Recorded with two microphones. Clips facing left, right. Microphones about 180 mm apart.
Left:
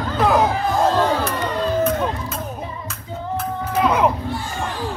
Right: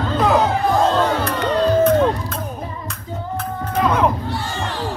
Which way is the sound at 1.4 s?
70° right (ahead or behind).